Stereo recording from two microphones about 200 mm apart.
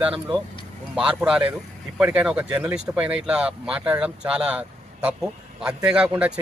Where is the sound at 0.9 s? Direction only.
5° right (ahead or behind).